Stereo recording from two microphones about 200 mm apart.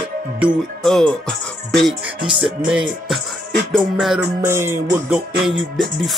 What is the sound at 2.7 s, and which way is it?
Music, 5° right (ahead or behind).